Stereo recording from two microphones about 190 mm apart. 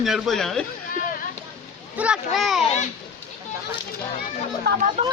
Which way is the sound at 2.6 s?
35° left (ahead or behind).